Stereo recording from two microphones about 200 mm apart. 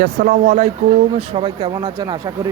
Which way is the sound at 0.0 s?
45° right (ahead or behind).